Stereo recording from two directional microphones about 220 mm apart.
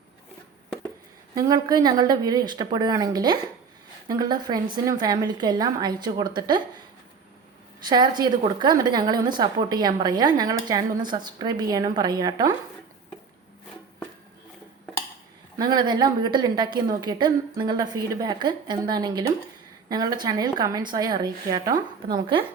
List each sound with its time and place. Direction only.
1.4 s a woman's voice: 20° right (ahead or behind)
7.9 s a woman's voice: 20° right (ahead or behind)
15.5 s a woman's voice: 20° right (ahead or behind)